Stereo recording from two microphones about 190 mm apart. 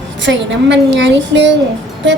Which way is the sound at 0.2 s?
70° right (ahead or behind).